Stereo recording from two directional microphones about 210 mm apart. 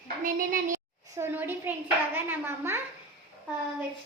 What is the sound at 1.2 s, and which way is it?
A child's voice, 10° right (ahead or behind).